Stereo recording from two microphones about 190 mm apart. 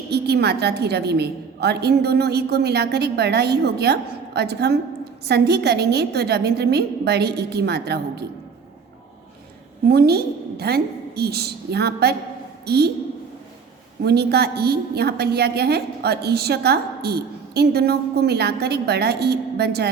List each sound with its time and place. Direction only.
0.1 s a woman's voice: 60° right (ahead or behind)
9.8 s a woman's voice: 55° right (ahead or behind)
14.0 s a woman's voice: 60° right (ahead or behind)